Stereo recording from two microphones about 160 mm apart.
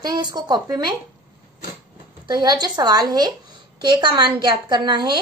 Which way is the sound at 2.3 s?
25° right (ahead or behind).